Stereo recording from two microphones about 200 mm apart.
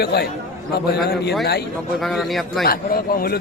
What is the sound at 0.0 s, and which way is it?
Speech, 55° left (ahead or behind).